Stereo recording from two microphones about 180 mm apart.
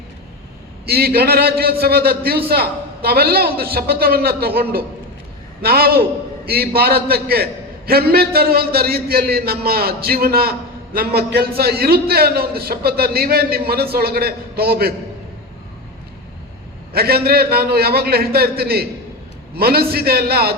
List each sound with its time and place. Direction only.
0.9 s a man's voice: 60° right (ahead or behind)
5.6 s a man's voice: 55° right (ahead or behind)
16.9 s a man's voice: 60° right (ahead or behind)